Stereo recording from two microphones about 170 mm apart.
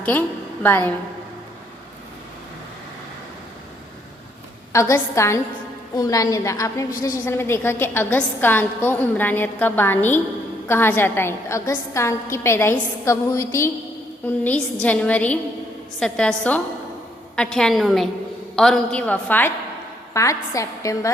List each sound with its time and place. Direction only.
0.0 s a woman's voice: 10° left (ahead or behind)
4.7 s a woman's voice: 15° left (ahead or behind)